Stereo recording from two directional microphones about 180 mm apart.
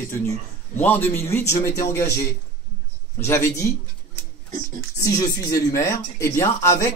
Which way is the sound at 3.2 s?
15° left (ahead or behind).